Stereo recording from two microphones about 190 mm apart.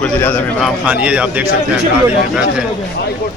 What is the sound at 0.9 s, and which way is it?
Speech, 5° right (ahead or behind).